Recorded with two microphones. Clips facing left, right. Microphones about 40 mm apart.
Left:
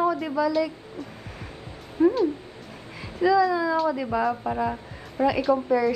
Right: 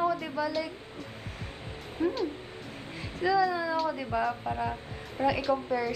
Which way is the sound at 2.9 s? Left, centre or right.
Centre.